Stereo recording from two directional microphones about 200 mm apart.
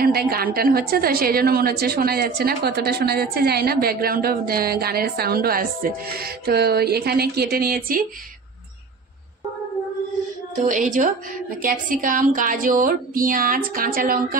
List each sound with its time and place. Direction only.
0.0 s a woman's voice: 50° right (ahead or behind)
10.6 s a woman's voice: 40° right (ahead or behind)